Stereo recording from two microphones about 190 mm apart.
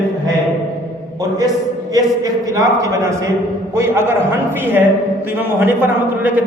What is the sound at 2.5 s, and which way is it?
A man's voice, 15° right (ahead or behind).